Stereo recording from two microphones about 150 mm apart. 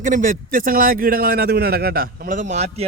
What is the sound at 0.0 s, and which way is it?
A man's voice, 60° right (ahead or behind).